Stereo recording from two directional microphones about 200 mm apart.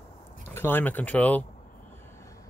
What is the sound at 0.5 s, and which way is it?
Speech, 10° left (ahead or behind).